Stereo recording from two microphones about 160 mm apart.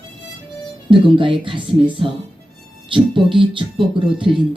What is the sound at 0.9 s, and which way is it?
Speech, 30° right (ahead or behind).